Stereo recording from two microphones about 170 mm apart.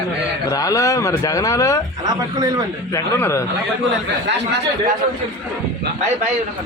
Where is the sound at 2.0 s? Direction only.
25° right (ahead or behind).